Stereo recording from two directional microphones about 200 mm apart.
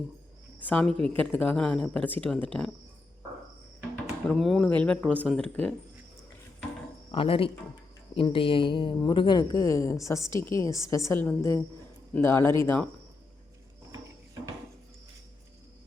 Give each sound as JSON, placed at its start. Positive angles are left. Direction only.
{"t": 0.6, "sound": "speech", "side_deg": 5}
{"t": 4.3, "sound": "speech", "side_deg": 0}
{"t": 7.1, "sound": "a woman's voice", "side_deg": 25}